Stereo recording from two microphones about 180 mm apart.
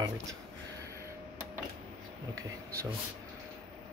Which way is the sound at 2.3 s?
15° right (ahead or behind).